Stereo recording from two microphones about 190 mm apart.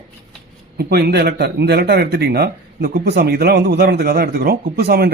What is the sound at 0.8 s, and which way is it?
Speech, 55° right (ahead or behind).